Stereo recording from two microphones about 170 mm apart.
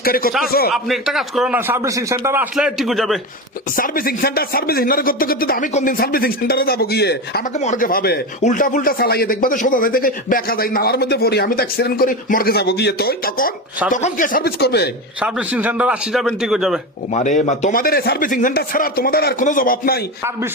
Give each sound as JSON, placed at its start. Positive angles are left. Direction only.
{"t": 0.0, "sound": "speech", "side_deg": 60}
{"t": 0.7, "sound": "a man's voice", "side_deg": 0}
{"t": 3.8, "sound": "speech", "side_deg": 55}
{"t": 7.4, "sound": "speech", "side_deg": 45}
{"t": 8.4, "sound": "speech", "side_deg": 50}
{"t": 15.2, "sound": "a man's voice", "side_deg": -10}
{"t": 17.1, "sound": "speech", "side_deg": 45}
{"t": 19.5, "sound": "speech", "side_deg": 55}